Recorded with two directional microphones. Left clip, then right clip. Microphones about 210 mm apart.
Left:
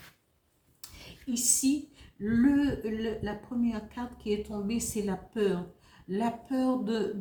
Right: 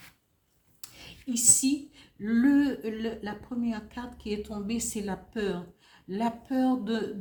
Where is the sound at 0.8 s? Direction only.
40° right (ahead or behind).